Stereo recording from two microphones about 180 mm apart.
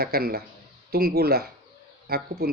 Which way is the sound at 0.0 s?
60° right (ahead or behind).